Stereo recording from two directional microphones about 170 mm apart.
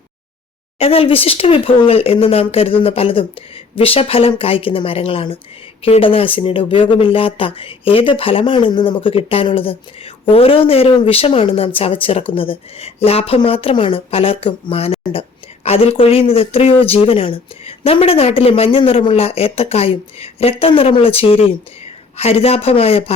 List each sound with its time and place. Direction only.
0.8 s speech: 35° left (ahead or behind)